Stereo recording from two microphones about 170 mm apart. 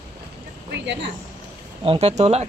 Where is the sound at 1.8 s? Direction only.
35° right (ahead or behind).